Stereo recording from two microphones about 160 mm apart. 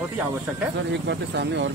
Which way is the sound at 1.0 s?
90° right.